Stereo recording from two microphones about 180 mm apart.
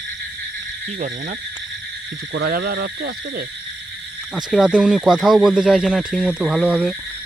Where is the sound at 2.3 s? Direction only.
70° right (ahead or behind).